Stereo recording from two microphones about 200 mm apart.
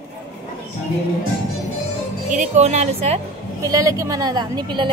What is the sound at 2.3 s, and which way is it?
Speech, 35° right (ahead or behind).